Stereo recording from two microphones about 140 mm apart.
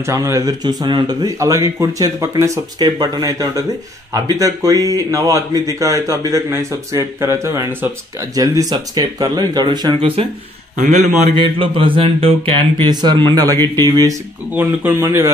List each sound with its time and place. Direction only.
0.0 s speech: 20° right (ahead or behind); by 10.2 s 40° right (ahead or behind)
10.8 s a man's voice: 55° right (ahead or behind)
11.3 s speech: 40° right (ahead or behind)
14.5 s speech: 15° right (ahead or behind)